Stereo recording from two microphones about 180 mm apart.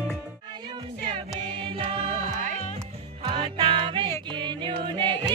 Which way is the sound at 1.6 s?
30° right (ahead or behind).